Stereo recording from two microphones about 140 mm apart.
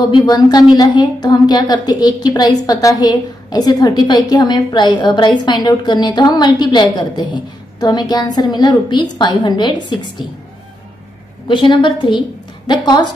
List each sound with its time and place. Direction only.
0.1 s a woman's voice: 30° left (ahead or behind)
11.4 s a woman's voice: 35° left (ahead or behind)